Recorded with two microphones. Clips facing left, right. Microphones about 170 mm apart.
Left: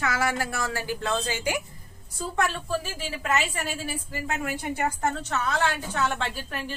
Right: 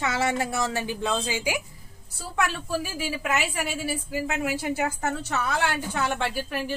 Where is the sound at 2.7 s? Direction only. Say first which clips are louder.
Right 1 dB; 10° right (ahead or behind).